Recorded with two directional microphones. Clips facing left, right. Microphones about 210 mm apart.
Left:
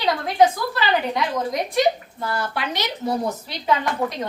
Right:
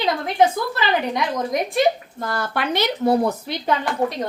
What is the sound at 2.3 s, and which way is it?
Speech, 50° right (ahead or behind).